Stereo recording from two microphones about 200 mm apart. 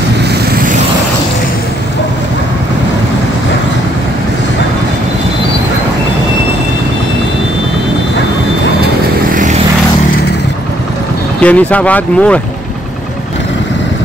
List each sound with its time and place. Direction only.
9.3 s vehicle: 40° right (ahead or behind)
11.4 s speech: 5° left (ahead or behind)